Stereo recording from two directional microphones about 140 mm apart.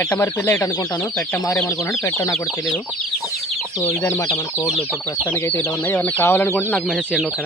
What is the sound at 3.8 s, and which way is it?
Speech, 15° left (ahead or behind).